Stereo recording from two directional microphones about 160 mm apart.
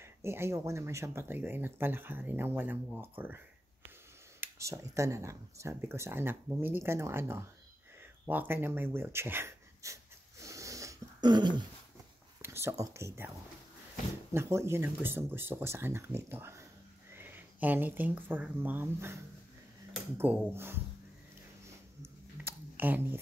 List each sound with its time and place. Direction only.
0.0 s speech: 15° right (ahead or behind)
4.4 s speech: 20° right (ahead or behind)
10.4 s dog: 20° right (ahead or behind)
12.4 s speech: 15° right (ahead or behind)
14.3 s speech: 15° right (ahead or behind)
20.2 s speech: 15° right (ahead or behind)
22.0 s a sound: 15° right (ahead or behind)